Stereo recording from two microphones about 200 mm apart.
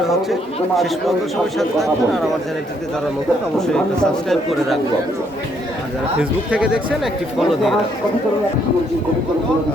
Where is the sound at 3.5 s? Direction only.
Centre (ahead or behind).